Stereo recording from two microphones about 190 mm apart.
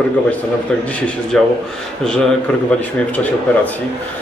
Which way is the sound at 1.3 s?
5° left (ahead or behind).